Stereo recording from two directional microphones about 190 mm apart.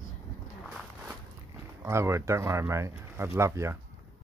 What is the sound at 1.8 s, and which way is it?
Speech, 15° right (ahead or behind).